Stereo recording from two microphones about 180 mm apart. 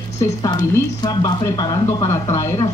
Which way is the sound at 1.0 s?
20° left (ahead or behind).